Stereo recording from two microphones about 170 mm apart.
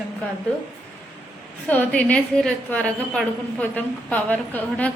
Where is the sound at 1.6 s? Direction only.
10° left (ahead or behind).